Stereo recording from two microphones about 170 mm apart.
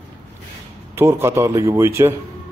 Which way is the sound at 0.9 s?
15° right (ahead or behind).